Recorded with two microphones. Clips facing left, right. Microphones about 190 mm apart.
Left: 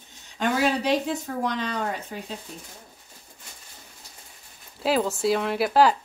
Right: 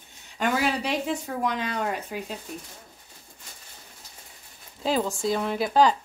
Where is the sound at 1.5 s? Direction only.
10° right (ahead or behind).